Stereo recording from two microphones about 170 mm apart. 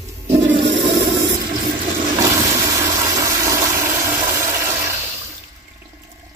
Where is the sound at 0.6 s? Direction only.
25° right (ahead or behind).